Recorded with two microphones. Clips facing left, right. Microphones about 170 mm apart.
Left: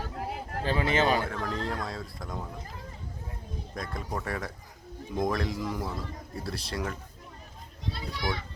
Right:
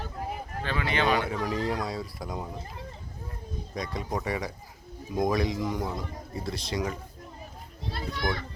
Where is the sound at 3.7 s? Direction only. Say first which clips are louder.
Right 3 dB; centre (ahead or behind).